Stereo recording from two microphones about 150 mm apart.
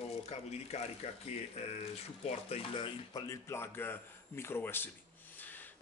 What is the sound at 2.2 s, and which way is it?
Speech, 40° left (ahead or behind).